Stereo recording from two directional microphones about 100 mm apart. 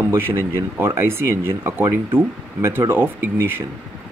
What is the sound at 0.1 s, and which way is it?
Speech, 25° right (ahead or behind).